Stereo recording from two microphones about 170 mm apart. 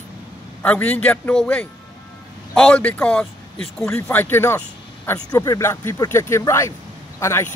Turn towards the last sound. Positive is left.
turn(degrees=15)  # may be behind; listen again after turning